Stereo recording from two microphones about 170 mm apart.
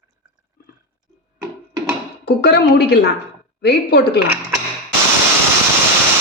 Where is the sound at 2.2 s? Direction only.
75° left (ahead or behind).